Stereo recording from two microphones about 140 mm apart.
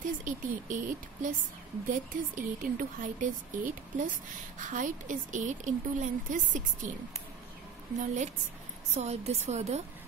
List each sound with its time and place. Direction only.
0.0 s a woman's voice: 65° right (ahead or behind)
8.0 s a woman's voice: 60° right (ahead or behind)
8.9 s a woman's voice: 50° right (ahead or behind)